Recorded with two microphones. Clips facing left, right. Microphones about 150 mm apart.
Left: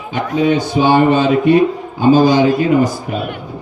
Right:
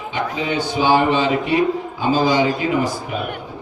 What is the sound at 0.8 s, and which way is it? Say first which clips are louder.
Speech: left 4 dB; 50° left (ahead or behind).